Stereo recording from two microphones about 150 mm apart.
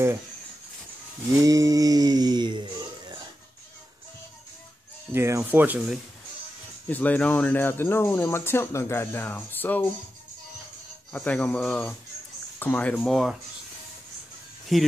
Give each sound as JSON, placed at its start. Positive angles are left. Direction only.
{"t": 1.4, "sound": "a sound", "side_deg": -25}
{"t": 5.1, "sound": "speech", "side_deg": -20}
{"t": 6.9, "sound": "speech", "side_deg": 10}
{"t": 11.1, "sound": "speech", "side_deg": 5}
{"t": 14.7, "sound": "speech", "side_deg": 0}